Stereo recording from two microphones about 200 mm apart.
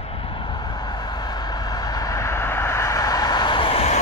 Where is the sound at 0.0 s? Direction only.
30° left (ahead or behind).